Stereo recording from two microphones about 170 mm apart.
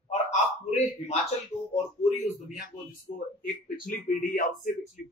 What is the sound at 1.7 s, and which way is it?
Speech, 40° left (ahead or behind).